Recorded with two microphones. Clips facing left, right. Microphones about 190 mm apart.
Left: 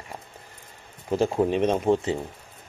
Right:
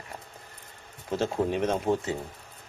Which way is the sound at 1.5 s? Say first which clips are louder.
Left 4 dB; 25° left (ahead or behind).